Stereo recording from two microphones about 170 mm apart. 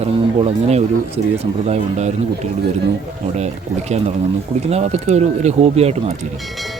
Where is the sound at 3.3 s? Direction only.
40° right (ahead or behind).